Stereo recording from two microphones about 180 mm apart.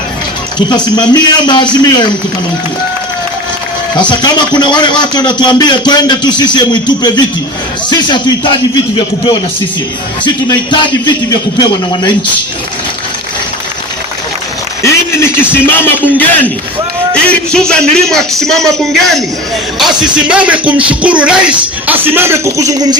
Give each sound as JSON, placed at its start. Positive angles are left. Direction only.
{"t": 0.7, "sound": "speech", "side_deg": 25}
{"t": 4.1, "sound": "speech", "side_deg": 25}
{"t": 14.8, "sound": "a man's voice", "side_deg": 15}
{"t": 17.5, "sound": "a man's voice", "side_deg": 5}